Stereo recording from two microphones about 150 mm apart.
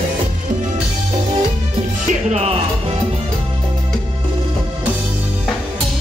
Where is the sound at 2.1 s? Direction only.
45° right (ahead or behind).